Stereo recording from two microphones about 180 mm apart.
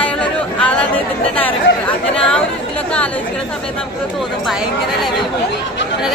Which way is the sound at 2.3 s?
5° left (ahead or behind).